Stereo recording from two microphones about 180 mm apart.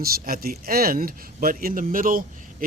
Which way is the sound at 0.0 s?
55° right (ahead or behind).